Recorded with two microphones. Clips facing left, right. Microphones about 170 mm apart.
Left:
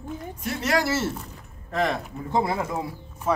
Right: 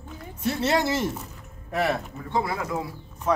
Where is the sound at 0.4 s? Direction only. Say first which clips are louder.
Right 2 dB; 30° right (ahead or behind); by 2.0 s 10° right (ahead or behind).